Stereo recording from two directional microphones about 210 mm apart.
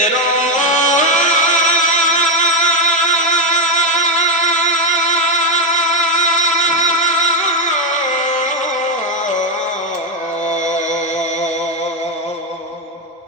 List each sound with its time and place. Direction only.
0.0 s music: 35° left (ahead or behind)